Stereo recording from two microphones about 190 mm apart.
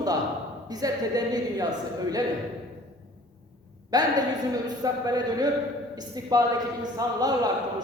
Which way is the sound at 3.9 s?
20° right (ahead or behind).